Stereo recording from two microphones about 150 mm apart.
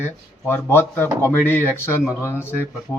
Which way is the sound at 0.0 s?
15° left (ahead or behind).